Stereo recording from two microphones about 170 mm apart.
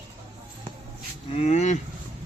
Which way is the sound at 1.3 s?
40° left (ahead or behind).